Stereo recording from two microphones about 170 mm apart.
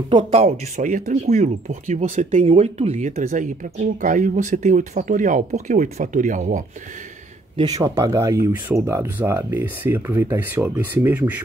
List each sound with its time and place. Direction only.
0.2 s speech: 40° right (ahead or behind)
3.1 s speech: 50° right (ahead or behind)
7.5 s speech: 25° right (ahead or behind)